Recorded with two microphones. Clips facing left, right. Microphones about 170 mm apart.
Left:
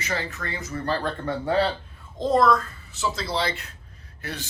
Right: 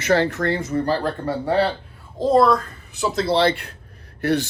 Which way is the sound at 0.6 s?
35° right (ahead or behind).